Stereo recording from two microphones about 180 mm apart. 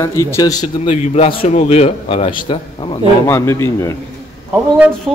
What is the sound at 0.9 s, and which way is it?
A man's voice, 35° left (ahead or behind).